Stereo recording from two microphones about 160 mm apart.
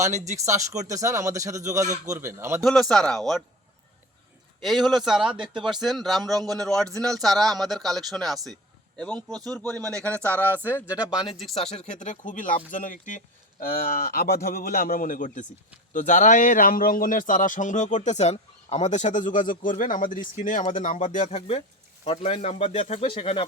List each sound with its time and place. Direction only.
0.3 s a man's voice: 20° right (ahead or behind)
2.6 s speech: centre (ahead or behind)
4.6 s speech: centre (ahead or behind)
10.1 s speech: 15° right (ahead or behind)
11.5 s a man's voice: 40° left (ahead or behind)